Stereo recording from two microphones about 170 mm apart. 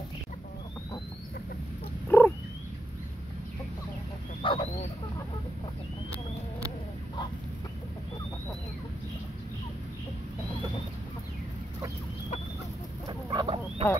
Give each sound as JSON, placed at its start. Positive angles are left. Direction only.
{"t": 2.0, "sound": "frog", "side_deg": 10}
{"t": 4.4, "sound": "a sound", "side_deg": 30}
{"t": 13.3, "sound": "frog", "side_deg": -30}